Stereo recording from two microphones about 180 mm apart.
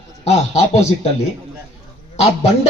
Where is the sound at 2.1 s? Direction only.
35° left (ahead or behind).